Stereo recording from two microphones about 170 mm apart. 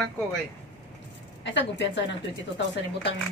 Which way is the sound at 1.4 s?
90° left.